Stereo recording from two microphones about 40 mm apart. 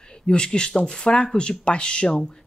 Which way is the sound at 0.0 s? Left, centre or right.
Left.